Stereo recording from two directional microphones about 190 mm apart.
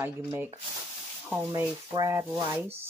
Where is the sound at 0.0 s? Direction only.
10° right (ahead or behind).